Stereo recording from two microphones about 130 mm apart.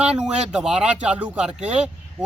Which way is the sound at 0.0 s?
5° right (ahead or behind).